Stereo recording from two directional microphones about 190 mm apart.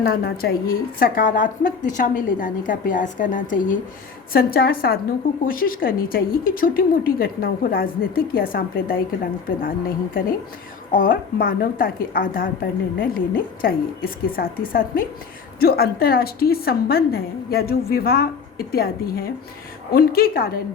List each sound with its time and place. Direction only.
0.0 s a woman's voice: 55° left (ahead or behind)